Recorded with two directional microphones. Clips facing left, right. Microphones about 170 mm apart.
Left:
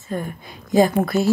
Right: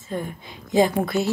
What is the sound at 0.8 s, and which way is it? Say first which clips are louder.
Speech: left 3 dB; 45° left (ahead or behind).